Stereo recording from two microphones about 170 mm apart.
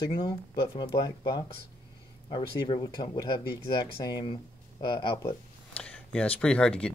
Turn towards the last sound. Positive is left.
turn(degrees=5)  # may be behind; listen again after turning